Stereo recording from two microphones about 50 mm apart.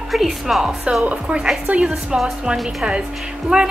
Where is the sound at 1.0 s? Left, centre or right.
Centre.